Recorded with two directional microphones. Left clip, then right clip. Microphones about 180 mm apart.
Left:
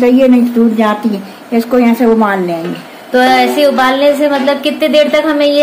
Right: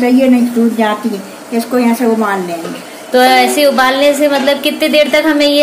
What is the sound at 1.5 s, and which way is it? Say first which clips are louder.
Speech: left 3 dB; 50° left (ahead or behind).